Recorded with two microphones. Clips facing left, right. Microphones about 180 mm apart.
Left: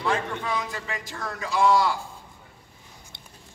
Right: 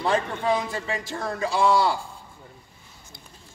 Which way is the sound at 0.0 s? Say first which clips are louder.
Right 3 dB; 35° right (ahead or behind).